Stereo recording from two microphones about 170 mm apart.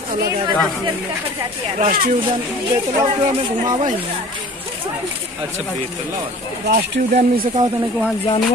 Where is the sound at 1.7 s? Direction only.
50° right (ahead or behind).